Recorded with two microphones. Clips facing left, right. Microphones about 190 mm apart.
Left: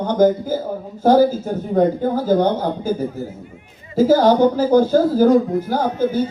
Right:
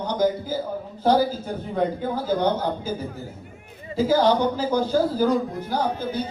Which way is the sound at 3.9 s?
45° left (ahead or behind).